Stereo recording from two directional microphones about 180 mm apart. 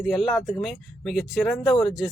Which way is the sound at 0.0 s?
Centre (ahead or behind).